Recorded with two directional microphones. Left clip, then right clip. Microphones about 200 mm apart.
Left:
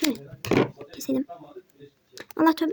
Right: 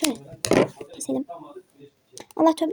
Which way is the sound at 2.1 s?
20° left (ahead or behind).